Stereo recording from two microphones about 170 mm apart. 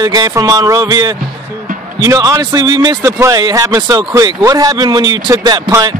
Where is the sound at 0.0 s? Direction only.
20° right (ahead or behind).